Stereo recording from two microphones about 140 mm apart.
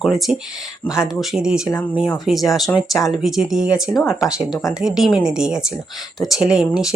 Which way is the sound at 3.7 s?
25° left (ahead or behind).